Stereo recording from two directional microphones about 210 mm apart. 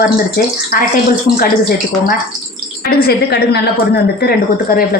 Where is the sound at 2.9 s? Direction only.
50° left (ahead or behind).